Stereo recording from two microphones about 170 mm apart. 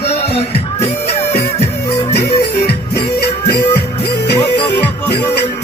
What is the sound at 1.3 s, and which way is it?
Music, 70° left (ahead or behind).